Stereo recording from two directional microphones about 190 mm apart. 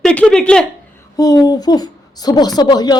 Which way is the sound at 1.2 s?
20° left (ahead or behind).